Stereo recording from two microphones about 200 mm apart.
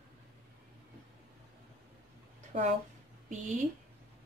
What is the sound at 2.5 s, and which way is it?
Speech, 35° right (ahead or behind).